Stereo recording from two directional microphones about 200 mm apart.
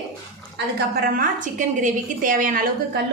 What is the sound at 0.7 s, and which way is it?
A woman's voice, 50° right (ahead or behind).